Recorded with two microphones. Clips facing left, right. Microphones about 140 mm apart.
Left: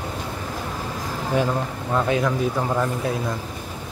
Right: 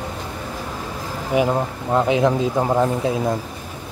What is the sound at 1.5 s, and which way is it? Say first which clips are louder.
A man's voice: right 4 dB; 20° right (ahead or behind).